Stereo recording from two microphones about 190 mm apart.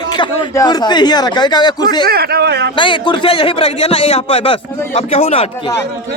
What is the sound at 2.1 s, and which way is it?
Speech, 55° right (ahead or behind).